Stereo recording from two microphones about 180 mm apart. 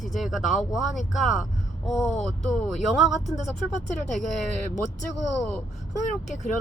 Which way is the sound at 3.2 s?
40° left (ahead or behind).